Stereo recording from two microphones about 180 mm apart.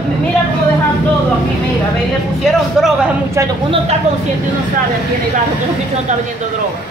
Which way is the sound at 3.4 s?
15° right (ahead or behind).